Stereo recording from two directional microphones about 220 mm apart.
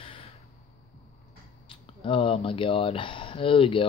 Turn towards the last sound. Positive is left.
turn(degrees=25)  # may be behind; listen again after turning